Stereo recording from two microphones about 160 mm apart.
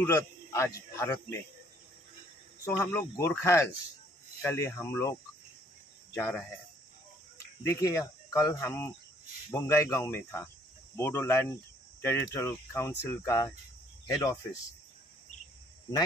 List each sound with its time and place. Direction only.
0.0 s speech: 15° left (ahead or behind)
2.6 s speech: 20° left (ahead or behind)
6.1 s speech: 15° left (ahead or behind)